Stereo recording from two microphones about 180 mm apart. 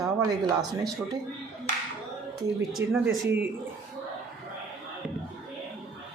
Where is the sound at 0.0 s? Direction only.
20° right (ahead or behind).